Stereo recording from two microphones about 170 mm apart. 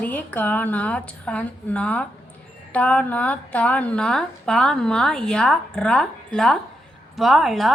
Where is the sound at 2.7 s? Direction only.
10° left (ahead or behind).